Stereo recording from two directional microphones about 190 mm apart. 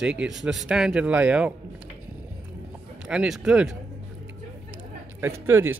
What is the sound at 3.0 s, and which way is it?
Speech, 5° right (ahead or behind).